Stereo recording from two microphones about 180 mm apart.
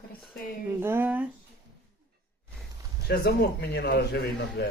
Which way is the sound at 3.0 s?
60° left (ahead or behind).